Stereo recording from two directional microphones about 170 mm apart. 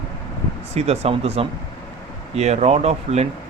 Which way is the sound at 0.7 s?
40° right (ahead or behind).